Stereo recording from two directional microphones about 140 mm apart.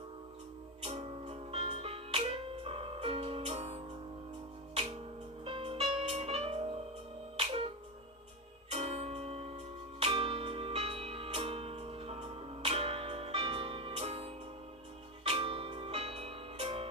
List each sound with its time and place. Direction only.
0.8 s music: 45° right (ahead or behind)
5.5 s music: 40° right (ahead or behind)
8.7 s music: 50° right (ahead or behind)